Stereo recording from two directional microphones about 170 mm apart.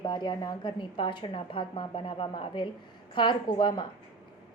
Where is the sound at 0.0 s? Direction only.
25° left (ahead or behind).